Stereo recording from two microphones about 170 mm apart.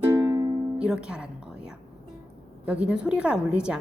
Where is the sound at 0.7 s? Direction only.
5° right (ahead or behind).